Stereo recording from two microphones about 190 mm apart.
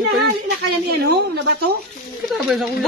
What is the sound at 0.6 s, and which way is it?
A woman's voice, 60° right (ahead or behind).